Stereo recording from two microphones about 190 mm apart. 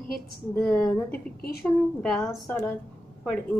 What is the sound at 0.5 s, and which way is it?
Speech, 10° left (ahead or behind).